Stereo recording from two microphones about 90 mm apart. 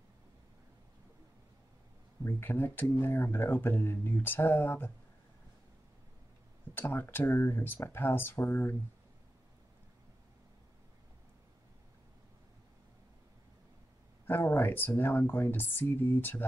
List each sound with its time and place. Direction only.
2.2 s speech: 25° left (ahead or behind)
6.7 s speech: 20° left (ahead or behind)
14.2 s speech: 25° left (ahead or behind)